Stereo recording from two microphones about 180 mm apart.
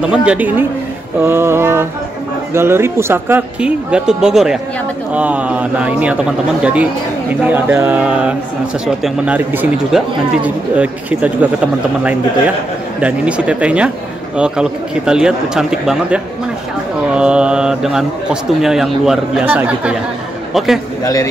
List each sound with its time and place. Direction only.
0.1 s speech: 5° right (ahead or behind)
21.0 s a man's voice: 20° left (ahead or behind)